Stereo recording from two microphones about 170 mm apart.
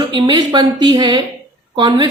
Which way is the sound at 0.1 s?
25° right (ahead or behind).